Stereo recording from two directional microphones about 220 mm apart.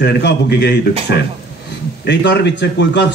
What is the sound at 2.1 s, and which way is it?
Speech, 50° left (ahead or behind).